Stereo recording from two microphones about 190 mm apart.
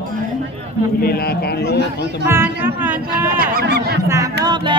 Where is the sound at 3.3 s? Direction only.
55° right (ahead or behind).